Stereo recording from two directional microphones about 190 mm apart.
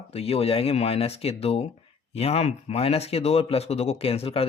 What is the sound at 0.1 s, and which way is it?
Speech, 30° left (ahead or behind).